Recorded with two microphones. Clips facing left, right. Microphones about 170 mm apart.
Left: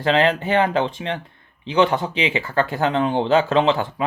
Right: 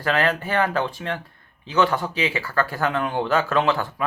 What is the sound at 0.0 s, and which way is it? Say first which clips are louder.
Speech: left 4 dB; 20° left (ahead or behind).